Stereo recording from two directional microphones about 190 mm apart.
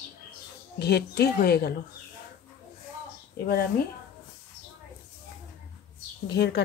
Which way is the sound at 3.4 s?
55° left (ahead or behind).